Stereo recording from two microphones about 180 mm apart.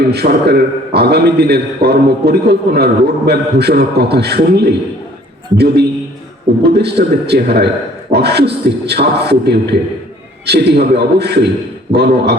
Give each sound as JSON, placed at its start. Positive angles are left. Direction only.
{"t": 0.1, "sound": "a man's voice", "side_deg": -65}